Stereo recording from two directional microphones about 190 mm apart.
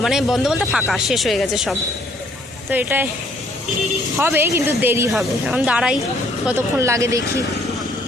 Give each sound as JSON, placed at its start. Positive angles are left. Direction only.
{"t": 0.0, "sound": "a woman's voice", "side_deg": 0}
{"t": 4.2, "sound": "a woman's voice", "side_deg": -10}